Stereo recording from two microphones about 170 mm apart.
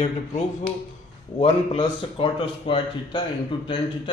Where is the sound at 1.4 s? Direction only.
35° left (ahead or behind).